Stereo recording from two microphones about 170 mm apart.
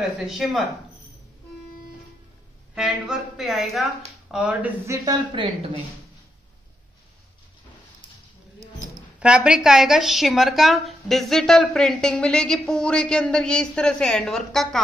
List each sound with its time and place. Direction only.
0.0 s a woman's voice: centre (ahead or behind)
2.7 s a woman's voice: centre (ahead or behind); by 5.7 s 30° right (ahead or behind)
9.2 s a woman's voice: 5° right (ahead or behind)